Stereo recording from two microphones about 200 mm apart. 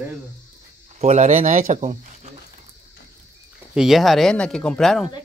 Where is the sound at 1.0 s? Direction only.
35° right (ahead or behind).